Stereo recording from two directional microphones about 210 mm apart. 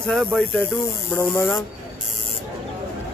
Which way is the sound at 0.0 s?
5° left (ahead or behind).